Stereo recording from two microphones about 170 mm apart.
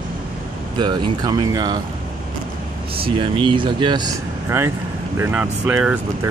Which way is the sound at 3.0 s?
30° right (ahead or behind).